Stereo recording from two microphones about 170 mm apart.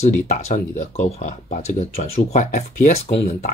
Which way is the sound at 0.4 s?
40° left (ahead or behind).